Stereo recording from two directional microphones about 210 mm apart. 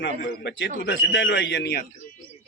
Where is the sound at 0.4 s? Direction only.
60° left (ahead or behind).